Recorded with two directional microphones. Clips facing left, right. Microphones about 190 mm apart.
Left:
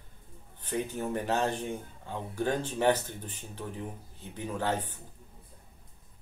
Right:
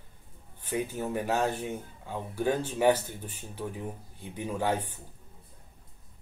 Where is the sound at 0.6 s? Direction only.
10° right (ahead or behind).